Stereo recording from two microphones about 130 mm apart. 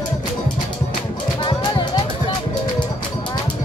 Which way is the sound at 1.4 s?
35° left (ahead or behind).